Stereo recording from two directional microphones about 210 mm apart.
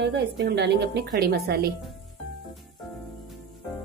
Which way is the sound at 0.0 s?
55° right (ahead or behind).